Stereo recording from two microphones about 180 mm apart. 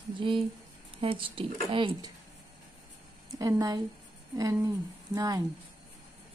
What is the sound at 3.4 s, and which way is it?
Speech, 20° right (ahead or behind).